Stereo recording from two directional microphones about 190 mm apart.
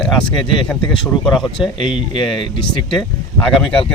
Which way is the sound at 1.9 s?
25° left (ahead or behind).